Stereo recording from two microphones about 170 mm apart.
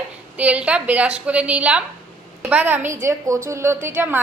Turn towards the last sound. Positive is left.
turn(degrees=-10)  # may be behind; listen again after turning